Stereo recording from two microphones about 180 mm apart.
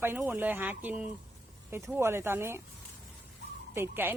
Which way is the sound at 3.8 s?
10° right (ahead or behind).